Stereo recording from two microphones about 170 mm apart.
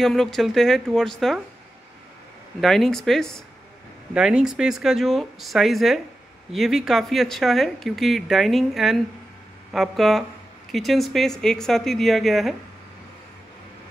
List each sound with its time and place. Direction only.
0.0 s speech: centre (ahead or behind)
2.6 s speech: centre (ahead or behind)